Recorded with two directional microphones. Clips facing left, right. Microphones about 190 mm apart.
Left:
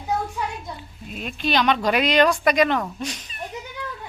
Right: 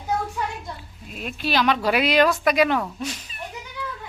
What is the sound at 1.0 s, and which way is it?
Speech, centre (ahead or behind).